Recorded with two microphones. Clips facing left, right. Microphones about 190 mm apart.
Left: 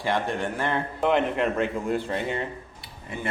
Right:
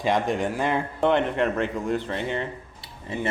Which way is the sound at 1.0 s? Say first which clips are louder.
Right 1 dB; 5° left (ahead or behind).